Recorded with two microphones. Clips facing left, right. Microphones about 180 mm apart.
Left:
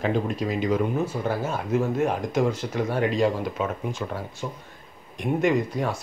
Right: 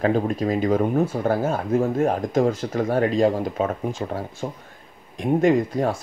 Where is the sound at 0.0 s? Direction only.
45° right (ahead or behind).